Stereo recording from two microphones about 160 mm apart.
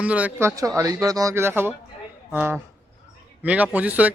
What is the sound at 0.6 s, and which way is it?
A man's voice, 20° right (ahead or behind).